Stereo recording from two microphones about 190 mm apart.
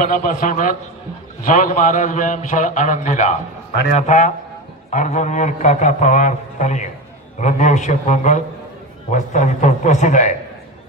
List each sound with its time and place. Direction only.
0.0 s a man's voice: 45° left (ahead or behind)